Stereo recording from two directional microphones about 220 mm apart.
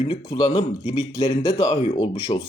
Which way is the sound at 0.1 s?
20° left (ahead or behind).